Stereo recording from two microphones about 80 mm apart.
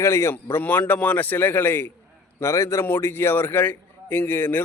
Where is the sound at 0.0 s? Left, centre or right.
Left.